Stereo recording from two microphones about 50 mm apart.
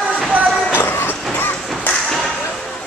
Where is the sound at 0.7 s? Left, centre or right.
Left.